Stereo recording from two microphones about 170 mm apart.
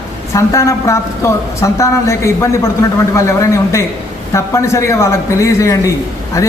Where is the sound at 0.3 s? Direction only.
15° left (ahead or behind).